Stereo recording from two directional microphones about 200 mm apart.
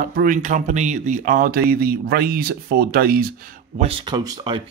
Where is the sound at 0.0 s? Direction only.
45° right (ahead or behind).